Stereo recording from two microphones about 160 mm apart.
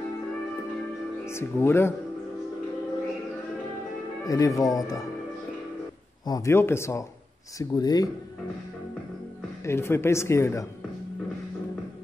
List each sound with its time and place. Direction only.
1.2 s speech: 15° left (ahead or behind)
4.2 s speech: 20° left (ahead or behind)
6.2 s speech: 20° left (ahead or behind)
9.7 s speech: 15° left (ahead or behind)